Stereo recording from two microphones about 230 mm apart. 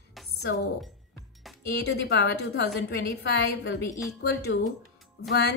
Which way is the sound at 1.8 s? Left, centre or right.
Left.